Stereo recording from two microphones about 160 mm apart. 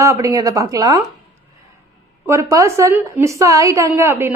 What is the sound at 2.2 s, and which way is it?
A woman's voice, 20° right (ahead or behind).